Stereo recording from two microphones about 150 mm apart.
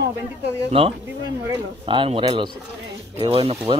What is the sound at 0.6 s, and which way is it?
A man's voice, 40° right (ahead or behind).